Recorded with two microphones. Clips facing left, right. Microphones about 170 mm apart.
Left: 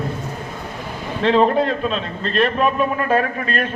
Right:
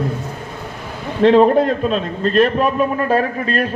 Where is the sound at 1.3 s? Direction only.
45° right (ahead or behind).